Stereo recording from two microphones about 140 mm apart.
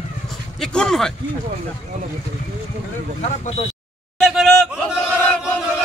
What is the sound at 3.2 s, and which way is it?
Speech, 45° left (ahead or behind).